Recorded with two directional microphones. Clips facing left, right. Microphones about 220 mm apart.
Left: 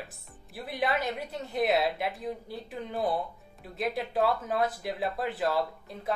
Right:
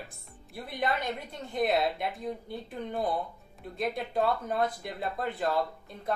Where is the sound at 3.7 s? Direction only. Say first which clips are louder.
Left 1 dB; centre (ahead or behind).